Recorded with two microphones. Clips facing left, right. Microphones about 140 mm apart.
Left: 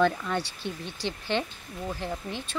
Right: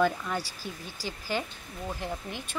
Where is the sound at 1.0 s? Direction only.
25° left (ahead or behind).